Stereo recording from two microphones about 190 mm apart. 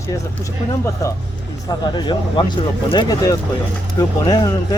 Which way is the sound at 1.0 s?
15° left (ahead or behind).